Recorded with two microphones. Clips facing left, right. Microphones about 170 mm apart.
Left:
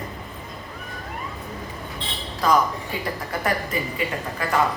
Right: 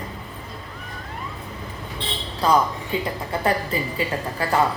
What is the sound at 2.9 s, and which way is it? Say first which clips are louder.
A woman's voice: right 6 dB; 25° right (ahead or behind).